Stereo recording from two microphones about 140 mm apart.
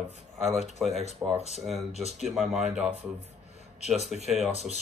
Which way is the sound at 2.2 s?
Centre (ahead or behind).